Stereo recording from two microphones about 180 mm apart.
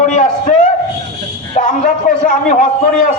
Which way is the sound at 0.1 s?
45° left (ahead or behind).